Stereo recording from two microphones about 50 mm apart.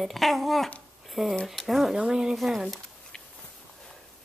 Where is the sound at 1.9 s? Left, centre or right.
Centre.